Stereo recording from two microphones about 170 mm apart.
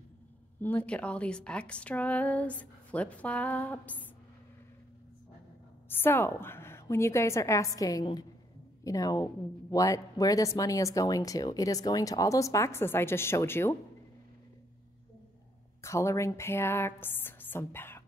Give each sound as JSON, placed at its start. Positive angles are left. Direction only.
{"t": 0.6, "sound": "a woman's voice", "side_deg": 10}
{"t": 5.9, "sound": "a woman's voice", "side_deg": 15}
{"t": 15.8, "sound": "a woman's voice", "side_deg": 15}